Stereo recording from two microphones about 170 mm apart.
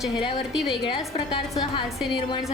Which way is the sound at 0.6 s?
30° left (ahead or behind).